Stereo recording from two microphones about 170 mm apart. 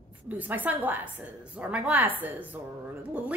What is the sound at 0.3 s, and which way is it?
Speech, 10° right (ahead or behind).